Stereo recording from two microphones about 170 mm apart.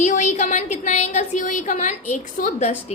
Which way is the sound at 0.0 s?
45° left (ahead or behind).